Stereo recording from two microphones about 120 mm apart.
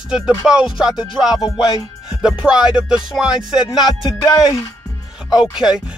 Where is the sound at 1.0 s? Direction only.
35° left (ahead or behind).